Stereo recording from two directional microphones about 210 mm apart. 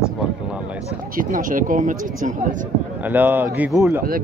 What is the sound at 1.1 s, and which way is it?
Speech, 40° right (ahead or behind).